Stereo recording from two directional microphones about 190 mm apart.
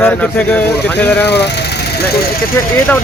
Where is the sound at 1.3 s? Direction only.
60° left (ahead or behind).